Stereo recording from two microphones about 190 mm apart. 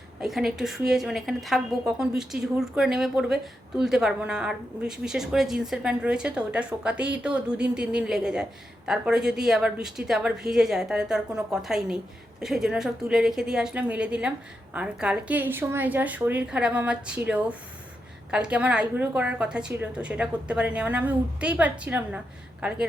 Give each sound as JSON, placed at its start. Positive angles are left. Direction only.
{"t": 0.2, "sound": "a woman's voice", "side_deg": 0}